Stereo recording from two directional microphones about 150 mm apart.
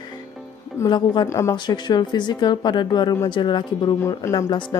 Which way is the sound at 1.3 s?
20° left (ahead or behind).